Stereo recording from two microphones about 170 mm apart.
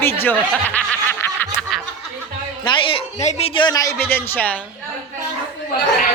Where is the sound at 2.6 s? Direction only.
30° left (ahead or behind); by 4.6 s 10° left (ahead or behind).